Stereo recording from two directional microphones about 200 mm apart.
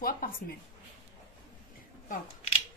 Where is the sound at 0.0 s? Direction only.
45° left (ahead or behind).